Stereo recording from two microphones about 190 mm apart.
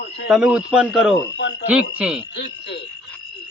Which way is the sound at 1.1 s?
65° left (ahead or behind).